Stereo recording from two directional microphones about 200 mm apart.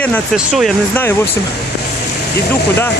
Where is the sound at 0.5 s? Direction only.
Centre (ahead or behind).